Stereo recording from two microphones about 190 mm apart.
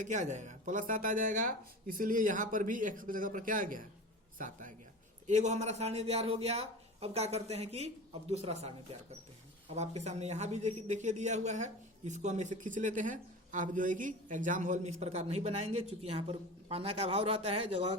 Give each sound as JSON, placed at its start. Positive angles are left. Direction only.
{"t": 0.0, "sound": "speech", "side_deg": -40}